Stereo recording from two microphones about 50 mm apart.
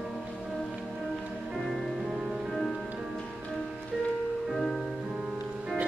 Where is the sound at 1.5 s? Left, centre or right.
Centre.